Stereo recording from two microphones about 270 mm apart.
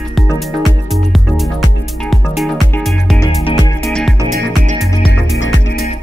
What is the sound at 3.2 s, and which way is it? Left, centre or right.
Music, centre.